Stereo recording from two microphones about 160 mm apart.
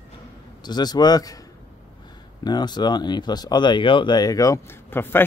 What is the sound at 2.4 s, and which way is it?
Speech, 25° left (ahead or behind).